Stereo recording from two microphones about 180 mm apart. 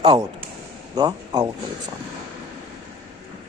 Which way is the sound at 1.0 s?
25° right (ahead or behind).